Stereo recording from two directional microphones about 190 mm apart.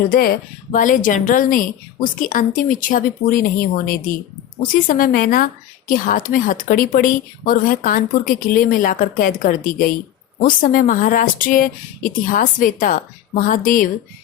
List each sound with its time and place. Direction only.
0.1 s a woman's voice: 50° left (ahead or behind)